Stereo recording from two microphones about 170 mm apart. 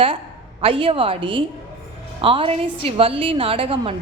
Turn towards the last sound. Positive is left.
turn(degrees=-35)  # may be behind; listen again after turning